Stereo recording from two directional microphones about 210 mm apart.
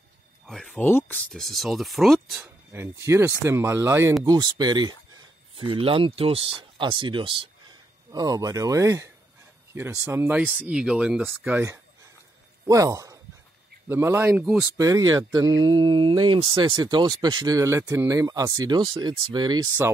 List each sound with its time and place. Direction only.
0.5 s speech: centre (ahead or behind)
2.4 s speech: 10° right (ahead or behind)
14.8 s speech: 15° right (ahead or behind)